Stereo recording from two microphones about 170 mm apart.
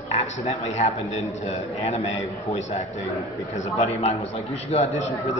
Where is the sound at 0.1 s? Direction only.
40° left (ahead or behind).